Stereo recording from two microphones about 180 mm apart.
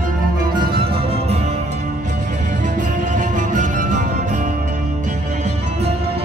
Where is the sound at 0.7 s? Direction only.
30° right (ahead or behind).